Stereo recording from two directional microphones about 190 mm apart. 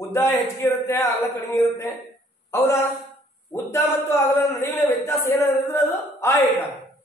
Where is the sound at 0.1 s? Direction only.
10° left (ahead or behind).